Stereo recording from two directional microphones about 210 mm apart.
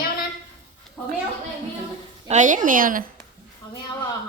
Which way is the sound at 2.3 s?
35° right (ahead or behind).